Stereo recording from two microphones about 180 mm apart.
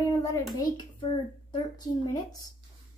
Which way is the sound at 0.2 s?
15° left (ahead or behind).